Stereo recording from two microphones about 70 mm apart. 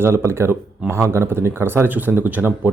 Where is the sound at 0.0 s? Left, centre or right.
Right.